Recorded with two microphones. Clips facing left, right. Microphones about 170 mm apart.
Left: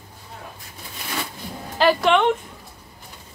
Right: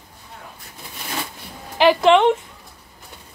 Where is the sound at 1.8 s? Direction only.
20° right (ahead or behind).